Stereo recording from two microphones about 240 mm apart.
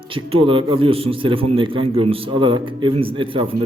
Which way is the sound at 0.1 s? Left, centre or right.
Right.